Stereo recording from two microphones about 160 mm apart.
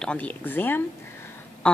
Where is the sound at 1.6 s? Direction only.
5° left (ahead or behind).